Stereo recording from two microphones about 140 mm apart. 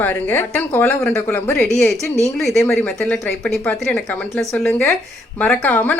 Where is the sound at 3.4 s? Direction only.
5° left (ahead or behind).